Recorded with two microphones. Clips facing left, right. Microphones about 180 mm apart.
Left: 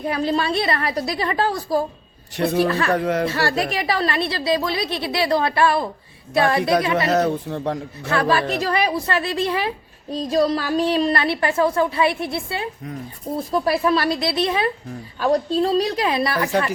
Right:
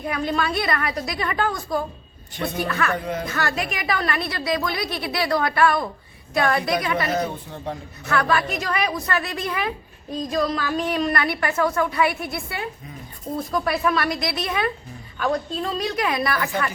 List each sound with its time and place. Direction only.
0.0 s a woman's voice: 30° left (ahead or behind)
2.3 s speech: 75° left (ahead or behind)
2.6 s a woman's voice: 30° left (ahead or behind)
2.9 s speech: 80° left
3.2 s a woman's voice: 30° left (ahead or behind)
7.1 s speech: 75° left (ahead or behind)
8.0 s a woman's voice: 30° left (ahead or behind)